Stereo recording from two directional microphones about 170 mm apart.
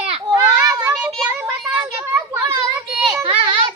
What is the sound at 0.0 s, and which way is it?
Children playing, 30° right (ahead or behind).